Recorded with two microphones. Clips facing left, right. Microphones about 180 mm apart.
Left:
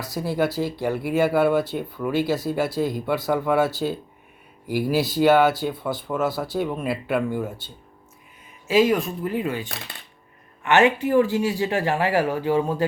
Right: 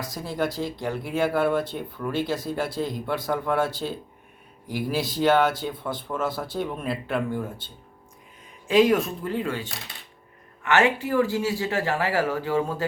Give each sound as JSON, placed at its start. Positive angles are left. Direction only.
{"t": 0.1, "sound": "speech", "side_deg": 5}
{"t": 8.6, "sound": "speech", "side_deg": 0}
{"t": 10.6, "sound": "speech", "side_deg": 20}